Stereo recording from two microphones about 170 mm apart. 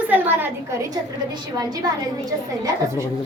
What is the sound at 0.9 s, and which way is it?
A woman's voice, 20° right (ahead or behind).